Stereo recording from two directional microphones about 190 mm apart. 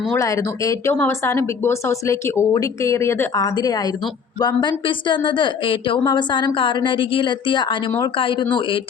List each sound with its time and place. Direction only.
0.2 s a woman's voice: 15° left (ahead or behind)
7.9 s speech: 15° left (ahead or behind)
8.1 s a woman's voice: 25° left (ahead or behind)